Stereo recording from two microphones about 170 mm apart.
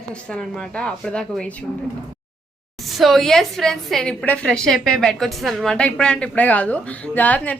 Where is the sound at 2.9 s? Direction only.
Centre (ahead or behind).